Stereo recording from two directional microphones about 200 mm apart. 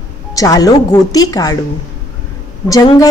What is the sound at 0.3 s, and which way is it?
A woman's voice, 15° left (ahead or behind).